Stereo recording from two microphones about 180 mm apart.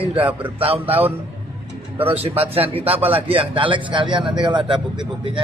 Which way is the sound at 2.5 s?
30° right (ahead or behind).